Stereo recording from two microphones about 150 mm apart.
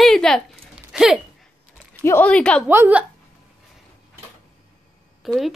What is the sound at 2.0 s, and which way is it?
Speech, 10° left (ahead or behind).